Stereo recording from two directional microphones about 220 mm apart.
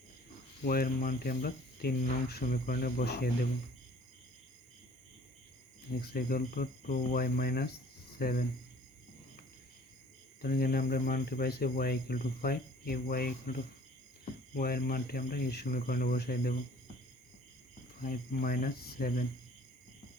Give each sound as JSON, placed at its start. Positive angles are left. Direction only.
{"t": 0.6, "sound": "speech", "side_deg": 40}
{"t": 5.9, "sound": "speech", "side_deg": 45}
{"t": 10.4, "sound": "speech", "side_deg": 45}
{"t": 14.5, "sound": "speech", "side_deg": 45}
{"t": 18.0, "sound": "speech", "side_deg": 40}